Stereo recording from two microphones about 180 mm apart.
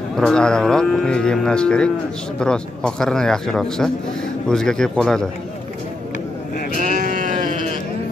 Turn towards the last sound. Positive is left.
turn(degrees=-50)  # may be behind; listen again after turning